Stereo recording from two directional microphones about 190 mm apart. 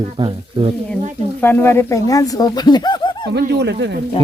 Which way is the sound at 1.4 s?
10° left (ahead or behind).